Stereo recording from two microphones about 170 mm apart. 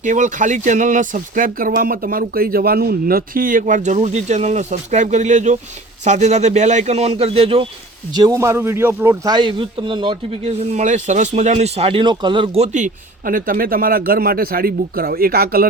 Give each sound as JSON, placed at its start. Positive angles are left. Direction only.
{"t": 0.0, "sound": "speech", "side_deg": -50}
{"t": 8.1, "sound": "speech", "side_deg": -20}
{"t": 9.3, "sound": "speech", "side_deg": -30}